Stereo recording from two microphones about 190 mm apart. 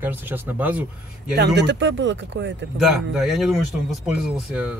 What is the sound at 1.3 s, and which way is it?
Speech, 60° right (ahead or behind).